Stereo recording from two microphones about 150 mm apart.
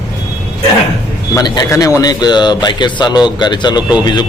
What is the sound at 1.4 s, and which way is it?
A man's voice, 25° left (ahead or behind).